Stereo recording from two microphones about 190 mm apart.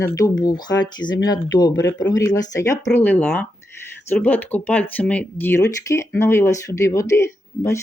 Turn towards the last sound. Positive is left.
turn(degrees=15)  # may be behind; listen again after turning